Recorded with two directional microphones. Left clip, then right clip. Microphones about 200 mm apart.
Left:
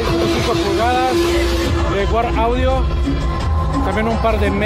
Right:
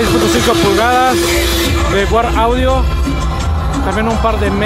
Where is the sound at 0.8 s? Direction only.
20° right (ahead or behind).